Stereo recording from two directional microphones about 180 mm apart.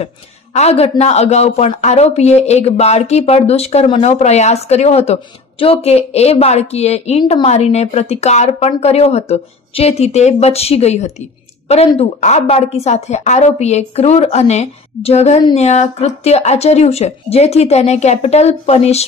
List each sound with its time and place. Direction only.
0.0 s a man's voice: 35° left (ahead or behind)